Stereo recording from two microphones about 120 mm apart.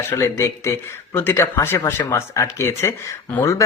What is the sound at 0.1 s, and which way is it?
Speech, 25° left (ahead or behind).